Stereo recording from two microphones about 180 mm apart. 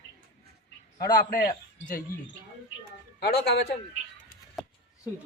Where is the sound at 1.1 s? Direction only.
50° left (ahead or behind).